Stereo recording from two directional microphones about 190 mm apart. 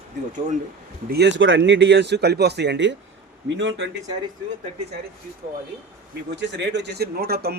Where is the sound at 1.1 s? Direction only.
65° right (ahead or behind).